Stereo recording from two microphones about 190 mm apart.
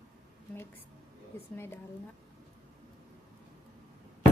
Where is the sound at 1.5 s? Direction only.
10° left (ahead or behind).